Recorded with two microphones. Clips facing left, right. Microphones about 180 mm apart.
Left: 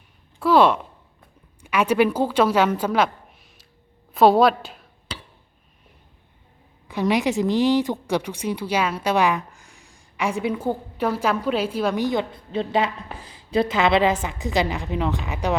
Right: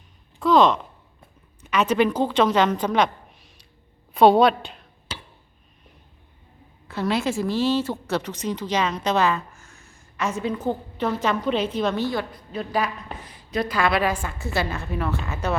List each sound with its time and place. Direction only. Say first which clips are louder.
0.3 s a woman's voice: left 1 dB; 10° left (ahead or behind)
6.8 s a woman's voice: left 3 dB; 15° left (ahead or behind)